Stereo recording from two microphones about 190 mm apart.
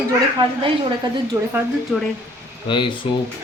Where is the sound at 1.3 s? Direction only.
10° right (ahead or behind).